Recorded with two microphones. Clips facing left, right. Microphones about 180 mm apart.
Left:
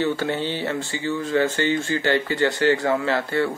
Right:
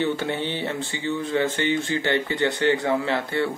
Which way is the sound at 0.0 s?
20° right (ahead or behind).